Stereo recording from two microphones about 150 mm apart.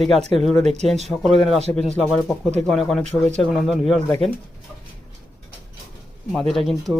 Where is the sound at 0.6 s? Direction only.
50° right (ahead or behind).